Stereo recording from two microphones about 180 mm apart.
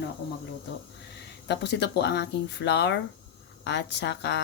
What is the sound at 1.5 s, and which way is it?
Speech, 70° left (ahead or behind).